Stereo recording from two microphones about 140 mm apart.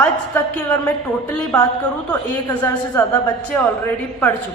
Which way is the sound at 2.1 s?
10° left (ahead or behind).